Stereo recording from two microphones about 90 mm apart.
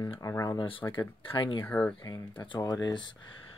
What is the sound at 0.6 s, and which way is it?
Speech, 80° left.